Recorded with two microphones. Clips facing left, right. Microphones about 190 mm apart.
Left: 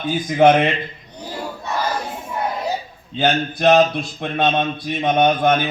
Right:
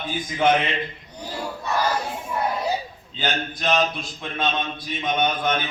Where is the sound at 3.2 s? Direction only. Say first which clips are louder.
Left 8 dB; 60° left (ahead or behind).